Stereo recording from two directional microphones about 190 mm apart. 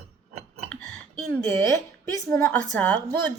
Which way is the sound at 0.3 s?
35° right (ahead or behind).